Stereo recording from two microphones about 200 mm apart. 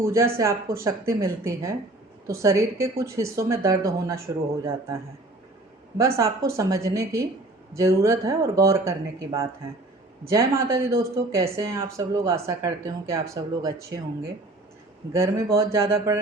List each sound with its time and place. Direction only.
0.0 s speech: 15° right (ahead or behind)
6.1 s speech: 15° right (ahead or behind)
15.1 s speech: 15° right (ahead or behind)